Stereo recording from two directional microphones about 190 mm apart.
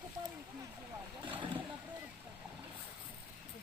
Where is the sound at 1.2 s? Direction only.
25° right (ahead or behind).